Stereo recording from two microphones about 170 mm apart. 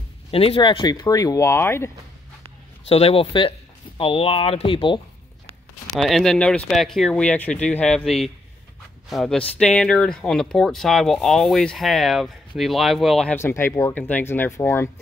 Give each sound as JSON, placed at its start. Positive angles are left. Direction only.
{"t": 0.3, "sound": "speech", "side_deg": 35}
{"t": 2.9, "sound": "speech", "side_deg": 35}
{"t": 5.9, "sound": "speech", "side_deg": 0}
{"t": 13.4, "sound": "speech", "side_deg": 15}